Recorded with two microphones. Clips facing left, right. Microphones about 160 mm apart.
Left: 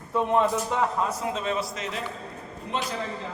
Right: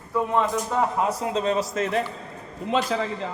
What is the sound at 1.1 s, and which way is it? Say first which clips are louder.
Speech: right 4 dB; 35° right (ahead or behind).